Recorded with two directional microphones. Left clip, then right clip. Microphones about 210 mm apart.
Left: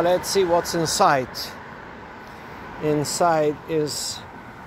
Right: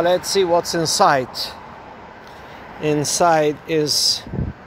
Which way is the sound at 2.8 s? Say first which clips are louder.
Right 4 dB; 25° right (ahead or behind).